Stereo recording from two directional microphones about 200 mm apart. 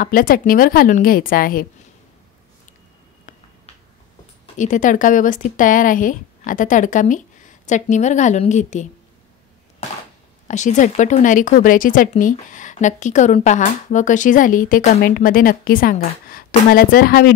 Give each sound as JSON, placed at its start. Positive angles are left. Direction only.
{"t": 0.0, "sound": "a woman's voice", "side_deg": 45}
{"t": 3.3, "sound": "finger snapping", "side_deg": 40}
{"t": 4.6, "sound": "speech", "side_deg": 40}
{"t": 10.5, "sound": "speech", "side_deg": 35}